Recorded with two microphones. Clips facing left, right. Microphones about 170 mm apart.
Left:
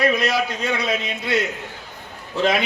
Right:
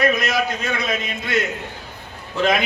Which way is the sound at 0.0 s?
30° left (ahead or behind).